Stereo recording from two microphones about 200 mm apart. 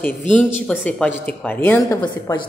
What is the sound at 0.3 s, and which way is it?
A woman's voice, 5° left (ahead or behind).